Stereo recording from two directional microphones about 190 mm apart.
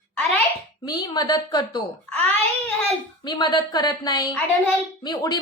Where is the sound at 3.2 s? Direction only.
20° left (ahead or behind).